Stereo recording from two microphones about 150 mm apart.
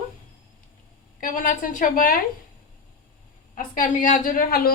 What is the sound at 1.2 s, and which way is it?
Speech, 60° left (ahead or behind).